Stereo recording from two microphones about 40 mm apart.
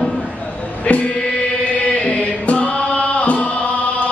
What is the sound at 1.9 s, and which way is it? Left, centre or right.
Chant, left.